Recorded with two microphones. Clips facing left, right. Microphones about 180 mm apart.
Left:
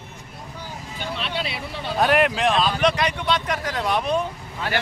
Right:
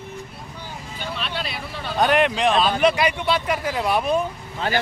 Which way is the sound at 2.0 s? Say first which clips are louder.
Right 1 dB; centre (ahead or behind).